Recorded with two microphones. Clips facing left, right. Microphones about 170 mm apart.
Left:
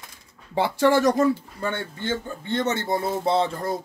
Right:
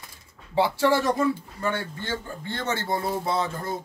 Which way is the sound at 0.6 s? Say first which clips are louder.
Left 2 dB; 50° left (ahead or behind).